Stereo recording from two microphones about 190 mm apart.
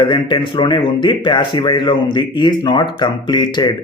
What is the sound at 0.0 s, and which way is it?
A man's voice, 25° left (ahead or behind).